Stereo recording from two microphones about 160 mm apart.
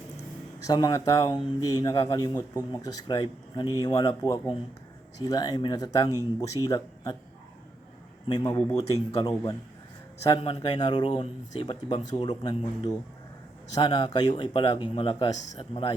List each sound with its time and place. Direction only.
0.6 s speech: 25° left (ahead or behind)
8.3 s speech: 25° left (ahead or behind)